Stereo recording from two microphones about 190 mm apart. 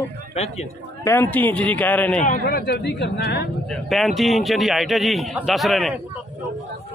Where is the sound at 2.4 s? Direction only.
55° left (ahead or behind).